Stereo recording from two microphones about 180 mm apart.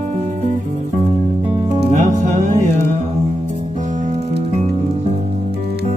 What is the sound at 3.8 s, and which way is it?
Music, 45° right (ahead or behind).